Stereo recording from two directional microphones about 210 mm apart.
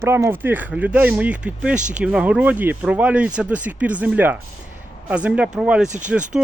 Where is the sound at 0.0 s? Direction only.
10° right (ahead or behind).